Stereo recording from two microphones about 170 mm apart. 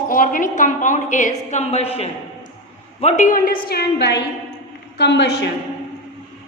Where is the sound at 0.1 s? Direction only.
50° left (ahead or behind); by 5.5 s 85° left.